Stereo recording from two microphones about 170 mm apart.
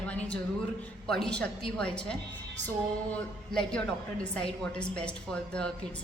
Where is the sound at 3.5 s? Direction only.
5° left (ahead or behind).